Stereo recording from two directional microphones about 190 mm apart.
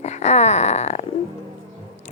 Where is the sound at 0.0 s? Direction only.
35° left (ahead or behind).